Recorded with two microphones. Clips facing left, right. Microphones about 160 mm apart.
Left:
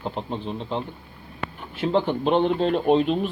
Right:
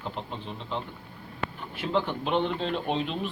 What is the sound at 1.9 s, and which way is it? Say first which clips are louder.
Speech: left 6 dB; 35° left (ahead or behind).